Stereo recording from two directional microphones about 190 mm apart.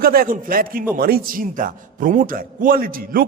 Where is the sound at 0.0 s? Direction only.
50° right (ahead or behind).